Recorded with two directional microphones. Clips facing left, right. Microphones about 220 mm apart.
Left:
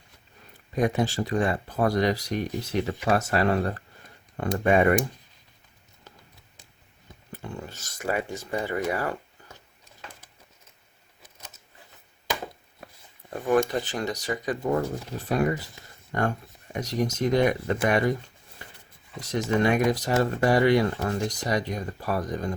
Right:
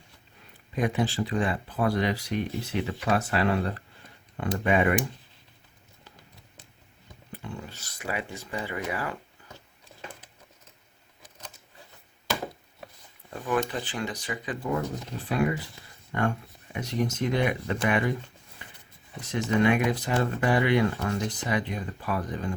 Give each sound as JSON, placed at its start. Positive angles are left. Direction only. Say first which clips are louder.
{"t": 0.8, "sound": "speech", "louder": "left 2 dB", "side_deg": 45}
{"t": 7.3, "sound": "speech", "louder": "left 2 dB", "side_deg": 45}
{"t": 13.3, "sound": "speech", "louder": "left 5 dB", "side_deg": 45}
{"t": 18.6, "sound": "a sound", "louder": "left 3 dB", "side_deg": 40}
{"t": 19.3, "sound": "speech", "louder": "even", "side_deg": 40}